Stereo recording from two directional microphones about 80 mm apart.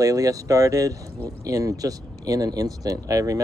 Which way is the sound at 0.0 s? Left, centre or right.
Right.